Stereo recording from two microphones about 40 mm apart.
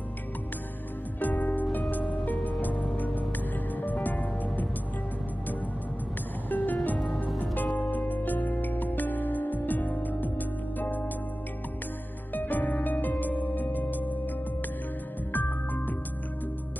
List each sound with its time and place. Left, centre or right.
1.2 s music: left
3.2 s music: left
6.5 s music: left
12.4 s music: left
15.3 s music: left